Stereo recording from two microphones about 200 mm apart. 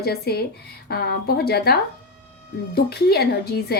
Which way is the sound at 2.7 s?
55° left (ahead or behind).